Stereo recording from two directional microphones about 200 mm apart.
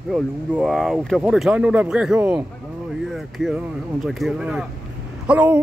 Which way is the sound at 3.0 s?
Centre (ahead or behind).